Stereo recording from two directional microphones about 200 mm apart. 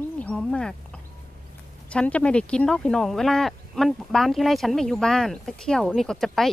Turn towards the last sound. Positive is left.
turn(degrees=0)  # may be behind; listen again after turning